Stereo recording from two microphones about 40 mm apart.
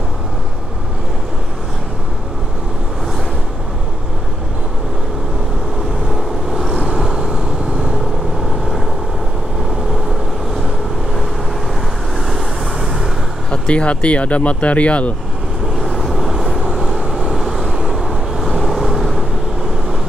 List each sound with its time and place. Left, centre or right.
6.0 s vehicle: centre
12.3 s vehicle: centre
13.5 s speech: left
16.0 s vehicle: centre